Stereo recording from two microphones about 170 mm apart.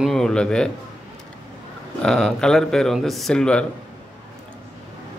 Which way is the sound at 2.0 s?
5° left (ahead or behind).